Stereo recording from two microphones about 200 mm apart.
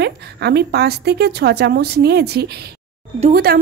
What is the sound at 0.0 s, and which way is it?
A woman's voice, 55° right (ahead or behind).